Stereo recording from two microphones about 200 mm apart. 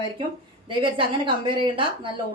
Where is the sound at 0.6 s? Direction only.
25° right (ahead or behind).